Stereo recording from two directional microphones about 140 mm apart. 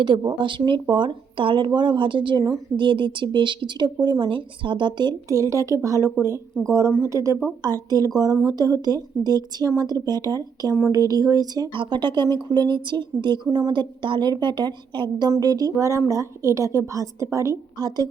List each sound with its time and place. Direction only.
0.0 s speech: 35° right (ahead or behind)
5.3 s a woman's voice: 20° right (ahead or behind)